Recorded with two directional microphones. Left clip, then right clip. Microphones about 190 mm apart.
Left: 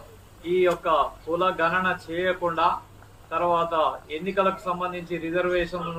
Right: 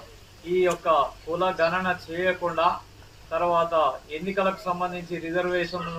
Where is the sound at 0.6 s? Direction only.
15° left (ahead or behind).